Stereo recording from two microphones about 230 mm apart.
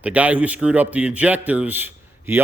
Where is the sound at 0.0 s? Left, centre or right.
Centre.